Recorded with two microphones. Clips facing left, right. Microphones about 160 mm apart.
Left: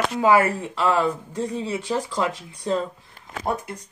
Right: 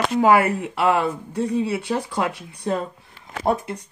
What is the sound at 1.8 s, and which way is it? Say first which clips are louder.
Speech: right 1 dB; 60° right (ahead or behind).